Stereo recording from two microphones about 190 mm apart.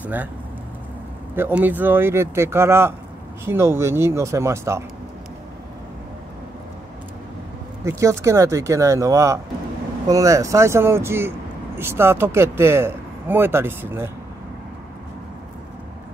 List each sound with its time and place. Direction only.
0.0 s speech: 10° right (ahead or behind)
1.3 s speech: 10° right (ahead or behind)
7.8 s speech: 15° right (ahead or behind)